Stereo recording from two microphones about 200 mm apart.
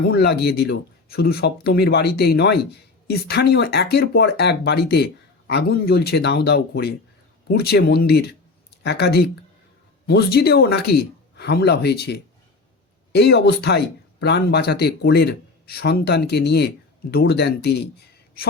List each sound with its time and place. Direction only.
0.0 s speech: 50° left (ahead or behind)